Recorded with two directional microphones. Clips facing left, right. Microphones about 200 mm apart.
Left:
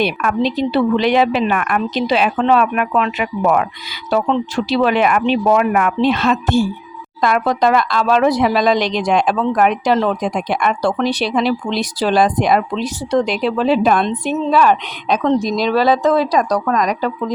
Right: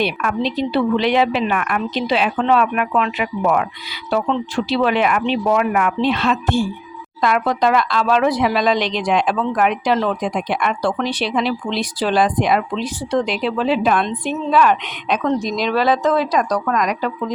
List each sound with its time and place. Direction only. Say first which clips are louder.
0.0 s a woman's voice: left 3 dB; 45° left (ahead or behind)